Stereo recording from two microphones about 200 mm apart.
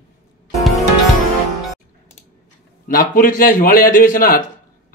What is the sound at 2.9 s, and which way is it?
A man's voice, 45° left (ahead or behind).